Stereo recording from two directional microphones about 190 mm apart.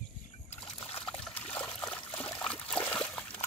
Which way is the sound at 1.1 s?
5° left (ahead or behind).